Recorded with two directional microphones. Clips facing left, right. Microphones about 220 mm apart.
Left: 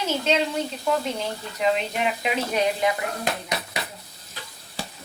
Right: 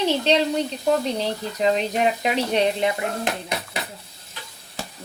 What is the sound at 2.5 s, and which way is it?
Speech, 25° right (ahead or behind).